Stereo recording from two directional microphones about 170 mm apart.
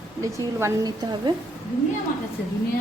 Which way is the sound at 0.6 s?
25° right (ahead or behind).